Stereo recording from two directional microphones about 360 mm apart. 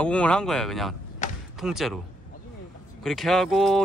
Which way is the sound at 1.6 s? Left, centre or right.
Centre.